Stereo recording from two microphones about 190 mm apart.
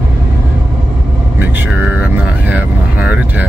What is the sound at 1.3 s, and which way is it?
Music, 10° right (ahead or behind).